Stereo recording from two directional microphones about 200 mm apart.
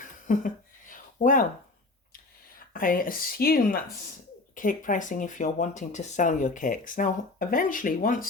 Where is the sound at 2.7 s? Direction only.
45° left (ahead or behind).